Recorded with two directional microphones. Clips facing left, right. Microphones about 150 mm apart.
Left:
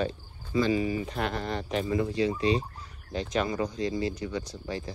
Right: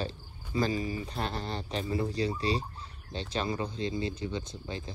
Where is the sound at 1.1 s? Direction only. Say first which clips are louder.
Left 4 dB; 30° right (ahead or behind).